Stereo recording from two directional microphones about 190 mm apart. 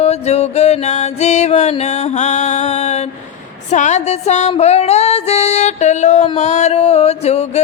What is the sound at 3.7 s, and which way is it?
Music, 40° left (ahead or behind).